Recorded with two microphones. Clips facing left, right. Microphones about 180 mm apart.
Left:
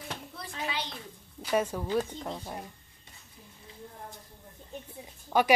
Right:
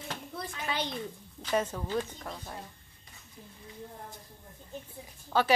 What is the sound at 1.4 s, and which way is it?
Speech, 10° left (ahead or behind).